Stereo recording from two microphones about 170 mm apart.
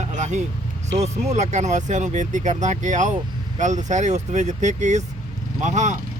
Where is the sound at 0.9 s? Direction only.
40° right (ahead or behind).